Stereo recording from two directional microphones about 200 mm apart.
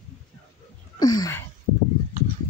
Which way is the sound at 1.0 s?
20° left (ahead or behind).